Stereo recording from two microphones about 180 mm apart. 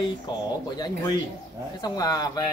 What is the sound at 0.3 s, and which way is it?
Speech, 25° left (ahead or behind).